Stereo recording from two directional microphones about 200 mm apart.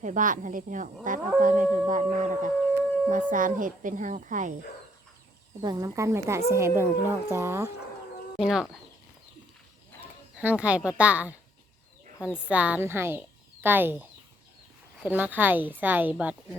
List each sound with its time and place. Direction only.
0.0 s speech: 40° right (ahead or behind)
5.6 s a woman's voice: 15° right (ahead or behind)
8.4 s speech: centre (ahead or behind)
10.0 s speech: 5° right (ahead or behind)
12.4 s a woman's voice: 5° right (ahead or behind)